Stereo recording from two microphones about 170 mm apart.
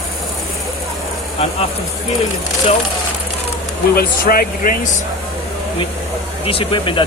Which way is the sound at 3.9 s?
60° left (ahead or behind).